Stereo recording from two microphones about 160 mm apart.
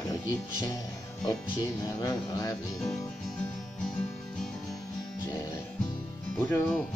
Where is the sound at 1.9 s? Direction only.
20° left (ahead or behind).